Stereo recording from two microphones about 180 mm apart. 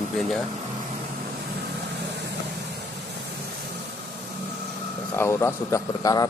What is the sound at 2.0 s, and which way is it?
Vehicle, 70° right (ahead or behind).